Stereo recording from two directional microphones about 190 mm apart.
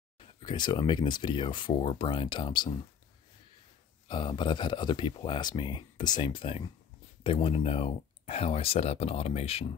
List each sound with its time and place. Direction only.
0.2 s speech: 25° left (ahead or behind)
4.1 s speech: 25° left (ahead or behind)